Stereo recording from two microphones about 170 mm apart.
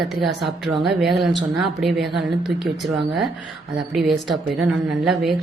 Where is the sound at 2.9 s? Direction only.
30° right (ahead or behind).